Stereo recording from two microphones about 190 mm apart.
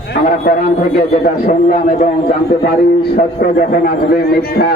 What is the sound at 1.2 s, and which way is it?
Speech, 50° left (ahead or behind).